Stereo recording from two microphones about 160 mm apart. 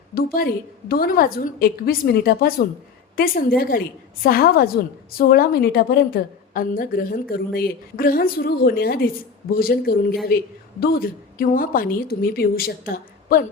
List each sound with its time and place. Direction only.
0.1 s a woman's voice: 65° left (ahead or behind)